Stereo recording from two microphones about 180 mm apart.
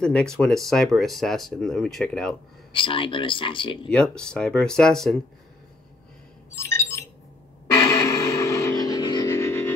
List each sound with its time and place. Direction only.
0.0 s speech: 5° left (ahead or behind)
2.7 s speech: 30° left (ahead or behind)
3.9 s speech: 5° left (ahead or behind)
6.5 s chink: 15° left (ahead or behind)
7.7 s music: 15° left (ahead or behind)